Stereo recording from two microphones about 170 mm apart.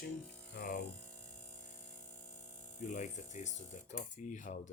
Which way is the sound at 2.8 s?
45° left (ahead or behind).